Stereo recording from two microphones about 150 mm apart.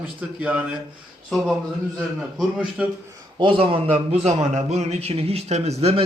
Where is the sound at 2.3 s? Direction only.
5° right (ahead or behind).